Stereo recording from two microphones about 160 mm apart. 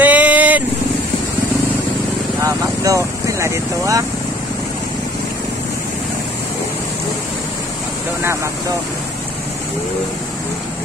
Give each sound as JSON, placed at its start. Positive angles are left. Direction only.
{"t": 0.0, "sound": "vehicle", "side_deg": -10}
{"t": 2.4, "sound": "vehicle", "side_deg": -20}